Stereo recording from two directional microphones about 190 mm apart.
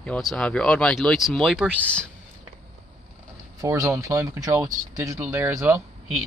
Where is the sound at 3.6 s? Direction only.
15° right (ahead or behind).